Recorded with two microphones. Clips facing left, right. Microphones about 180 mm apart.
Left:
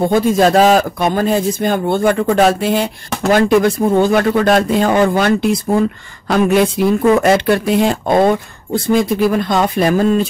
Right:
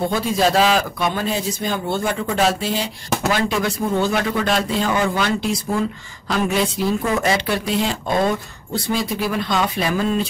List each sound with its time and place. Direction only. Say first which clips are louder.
0.1 s speech: left 7 dB; 50° left (ahead or behind)